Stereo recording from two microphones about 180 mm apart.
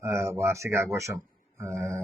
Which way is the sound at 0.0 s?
15° right (ahead or behind).